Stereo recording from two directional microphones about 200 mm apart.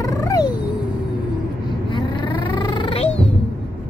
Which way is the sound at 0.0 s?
15° left (ahead or behind).